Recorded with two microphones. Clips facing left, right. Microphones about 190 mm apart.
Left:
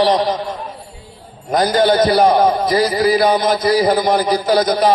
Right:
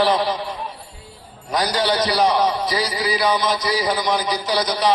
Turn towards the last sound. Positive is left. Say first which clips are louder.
# left 7 dB
turn(degrees=50)  # may be behind; listen again after turning